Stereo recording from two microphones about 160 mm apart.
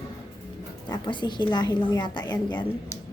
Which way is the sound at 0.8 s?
30° left (ahead or behind).